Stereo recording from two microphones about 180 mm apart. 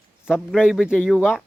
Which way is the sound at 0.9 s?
10° left (ahead or behind).